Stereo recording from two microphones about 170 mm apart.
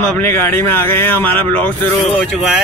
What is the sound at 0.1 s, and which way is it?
Speech, 15° left (ahead or behind).